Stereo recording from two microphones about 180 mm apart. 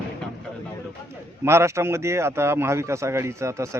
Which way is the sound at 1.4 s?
15° right (ahead or behind).